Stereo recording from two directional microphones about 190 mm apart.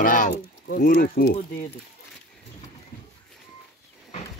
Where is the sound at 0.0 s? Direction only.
45° left (ahead or behind).